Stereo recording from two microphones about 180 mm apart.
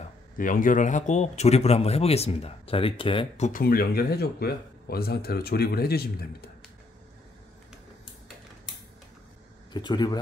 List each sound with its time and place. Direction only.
0.4 s speech: 50° left (ahead or behind); by 3.4 s 30° left (ahead or behind)
3.4 s speech: 55° left (ahead or behind)
9.7 s speech: 25° left (ahead or behind)